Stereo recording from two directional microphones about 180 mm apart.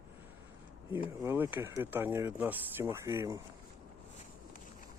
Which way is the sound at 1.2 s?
10° right (ahead or behind).